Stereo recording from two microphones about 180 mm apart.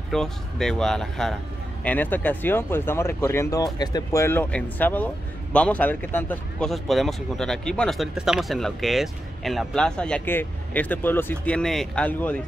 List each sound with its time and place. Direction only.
0.1 s speech: 5° left (ahead or behind)